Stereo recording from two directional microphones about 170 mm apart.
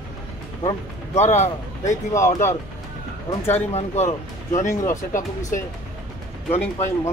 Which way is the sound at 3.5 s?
40° left (ahead or behind).